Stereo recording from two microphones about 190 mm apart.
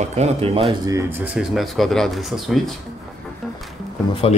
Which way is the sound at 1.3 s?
Centre (ahead or behind).